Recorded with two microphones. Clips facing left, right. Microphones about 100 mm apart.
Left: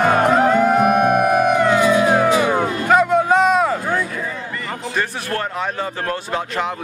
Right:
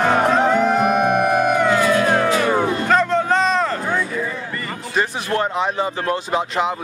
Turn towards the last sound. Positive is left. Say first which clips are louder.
# right 2 dB
turn(degrees=-15)  # may be behind; listen again after turning